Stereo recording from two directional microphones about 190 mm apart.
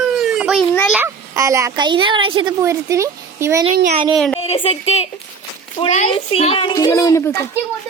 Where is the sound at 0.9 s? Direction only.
15° right (ahead or behind).